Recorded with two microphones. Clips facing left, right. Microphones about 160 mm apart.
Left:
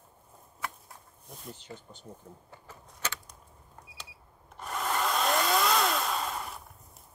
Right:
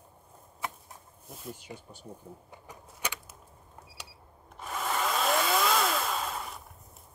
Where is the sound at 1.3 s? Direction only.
5° right (ahead or behind).